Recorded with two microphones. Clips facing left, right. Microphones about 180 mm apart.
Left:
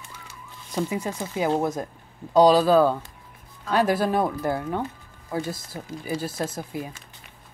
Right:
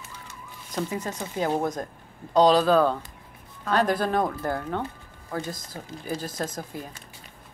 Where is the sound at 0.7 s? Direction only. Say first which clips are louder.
Left 3 dB; 10° left (ahead or behind).